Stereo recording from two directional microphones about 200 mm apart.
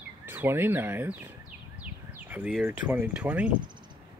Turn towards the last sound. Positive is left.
turn(degrees=-5)  # may be behind; listen again after turning